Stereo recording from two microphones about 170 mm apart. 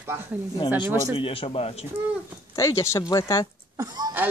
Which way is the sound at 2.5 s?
20° left (ahead or behind).